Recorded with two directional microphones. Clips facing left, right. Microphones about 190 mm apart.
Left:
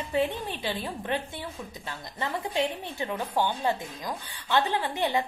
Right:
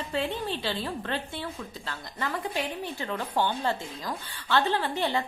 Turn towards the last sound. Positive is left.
turn(degrees=15)  # may be behind; listen again after turning